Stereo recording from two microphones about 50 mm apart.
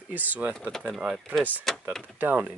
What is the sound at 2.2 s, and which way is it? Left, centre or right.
Speech, right.